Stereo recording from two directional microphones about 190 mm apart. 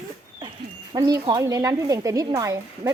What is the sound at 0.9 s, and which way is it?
Speech, 20° right (ahead or behind).